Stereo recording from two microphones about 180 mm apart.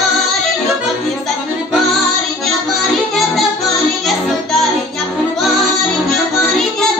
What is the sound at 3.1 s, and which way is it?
Music, centre (ahead or behind).